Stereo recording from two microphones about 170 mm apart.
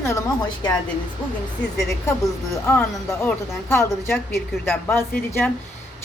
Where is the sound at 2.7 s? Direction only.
10° left (ahead or behind).